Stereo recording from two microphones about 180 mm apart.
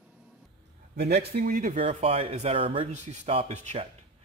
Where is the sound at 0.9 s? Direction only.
60° right (ahead or behind).